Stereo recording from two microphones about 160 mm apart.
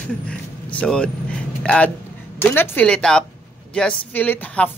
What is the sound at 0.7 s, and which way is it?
A woman's voice, 5° left (ahead or behind).